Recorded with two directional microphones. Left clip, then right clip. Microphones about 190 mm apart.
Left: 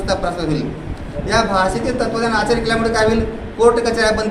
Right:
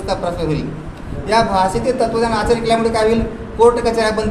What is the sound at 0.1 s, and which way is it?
A man's voice, 10° right (ahead or behind).